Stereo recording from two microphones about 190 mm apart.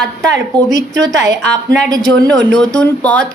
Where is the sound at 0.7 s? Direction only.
70° right (ahead or behind).